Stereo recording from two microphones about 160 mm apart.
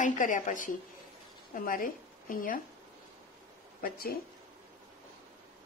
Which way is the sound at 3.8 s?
65° left (ahead or behind).